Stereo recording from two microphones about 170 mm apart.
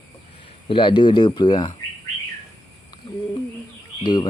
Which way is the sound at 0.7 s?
30° left (ahead or behind).